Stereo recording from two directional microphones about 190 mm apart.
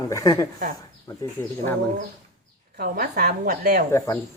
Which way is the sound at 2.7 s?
55° right (ahead or behind).